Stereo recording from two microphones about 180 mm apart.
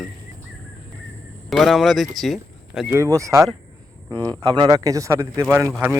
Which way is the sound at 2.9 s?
15° right (ahead or behind).